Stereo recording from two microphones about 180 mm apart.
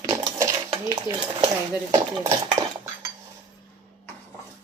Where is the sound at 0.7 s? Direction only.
25° right (ahead or behind).